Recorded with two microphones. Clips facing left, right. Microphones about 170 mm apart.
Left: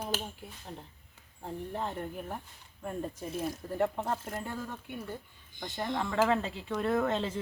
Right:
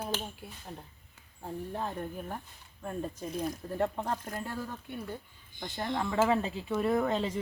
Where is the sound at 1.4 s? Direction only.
Centre (ahead or behind).